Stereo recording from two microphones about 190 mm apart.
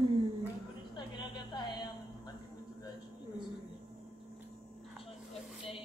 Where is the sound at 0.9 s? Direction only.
25° left (ahead or behind).